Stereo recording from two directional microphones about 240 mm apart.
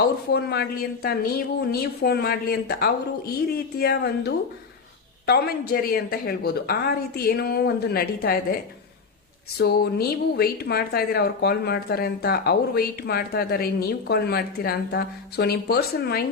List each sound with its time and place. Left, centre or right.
0.3 s a woman's voice: left
9.6 s a woman's voice: left